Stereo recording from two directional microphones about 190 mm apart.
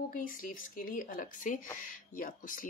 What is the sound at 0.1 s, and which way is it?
Speech, 45° left (ahead or behind).